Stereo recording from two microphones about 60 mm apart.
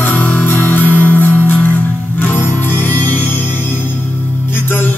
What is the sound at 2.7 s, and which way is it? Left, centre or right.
Music, left.